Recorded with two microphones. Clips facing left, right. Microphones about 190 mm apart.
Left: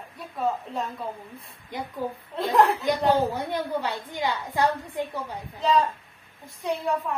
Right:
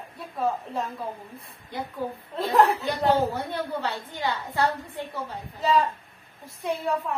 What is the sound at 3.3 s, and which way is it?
A woman's voice, 15° left (ahead or behind).